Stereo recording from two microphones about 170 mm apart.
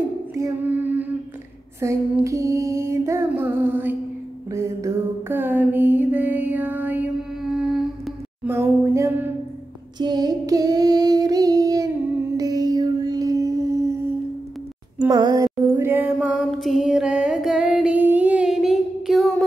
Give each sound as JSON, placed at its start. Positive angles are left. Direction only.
{"t": 0.4, "sound": "female singing", "side_deg": -10}
{"t": 4.5, "sound": "mantra", "side_deg": -20}
{"t": 8.5, "sound": "female singing", "side_deg": -15}
{"t": 9.9, "sound": "female singing", "side_deg": -25}
{"t": 12.4, "sound": "a sound", "side_deg": -20}
{"t": 15.0, "sound": "a sound", "side_deg": -25}